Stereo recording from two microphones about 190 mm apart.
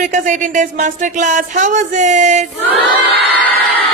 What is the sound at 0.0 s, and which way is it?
Speech, 40° right (ahead or behind).